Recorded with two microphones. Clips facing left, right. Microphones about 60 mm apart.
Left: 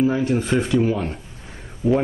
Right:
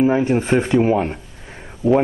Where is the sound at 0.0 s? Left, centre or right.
Right.